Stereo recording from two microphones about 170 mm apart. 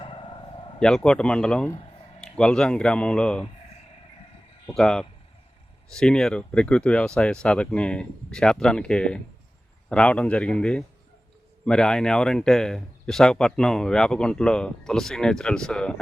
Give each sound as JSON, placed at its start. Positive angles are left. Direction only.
{"t": 0.0, "sound": "a sound", "side_deg": 30}
{"t": 0.8, "sound": "speech", "side_deg": 5}
{"t": 4.7, "sound": "a man's voice", "side_deg": 5}